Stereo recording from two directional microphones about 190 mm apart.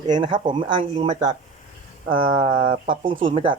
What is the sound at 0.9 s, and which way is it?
A man's voice, 35° right (ahead or behind).